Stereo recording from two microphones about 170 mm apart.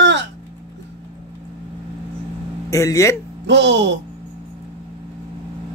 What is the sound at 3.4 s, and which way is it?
Speech, 90° right.